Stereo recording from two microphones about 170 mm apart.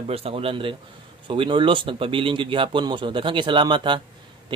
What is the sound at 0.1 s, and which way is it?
A man's voice, 35° right (ahead or behind).